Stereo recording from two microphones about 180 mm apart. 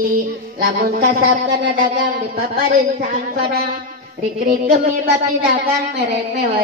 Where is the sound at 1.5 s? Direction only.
60° right (ahead or behind).